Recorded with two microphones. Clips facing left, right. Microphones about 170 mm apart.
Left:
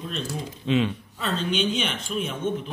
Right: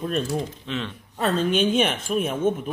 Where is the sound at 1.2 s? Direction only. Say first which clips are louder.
Right 5 dB; 50° right (ahead or behind).